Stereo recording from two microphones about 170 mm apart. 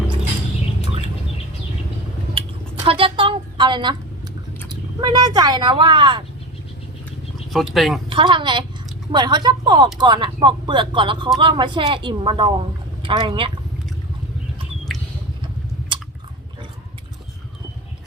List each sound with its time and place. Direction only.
2.8 s a sound: 35° right (ahead or behind)
4.7 s speech: 25° right (ahead or behind)
7.5 s speech: centre (ahead or behind)
8.1 s a woman's voice: 30° right (ahead or behind)
15.9 s chewing: 30° right (ahead or behind)